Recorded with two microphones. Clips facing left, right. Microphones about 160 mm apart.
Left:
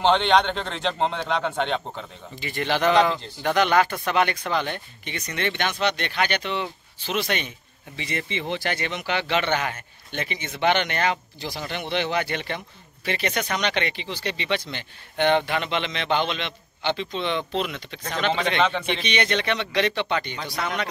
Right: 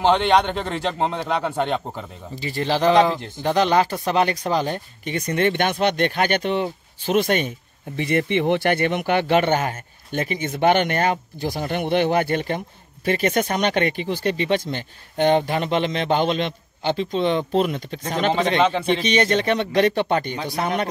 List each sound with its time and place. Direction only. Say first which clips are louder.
0.0 s a man's voice: right 2 dB; 10° right (ahead or behind)
2.3 s speech: right 3 dB; 35° right (ahead or behind)